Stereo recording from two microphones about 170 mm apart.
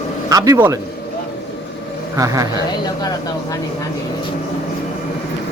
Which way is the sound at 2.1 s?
20° right (ahead or behind).